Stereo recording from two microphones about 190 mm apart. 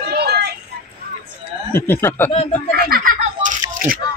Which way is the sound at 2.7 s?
50° right (ahead or behind).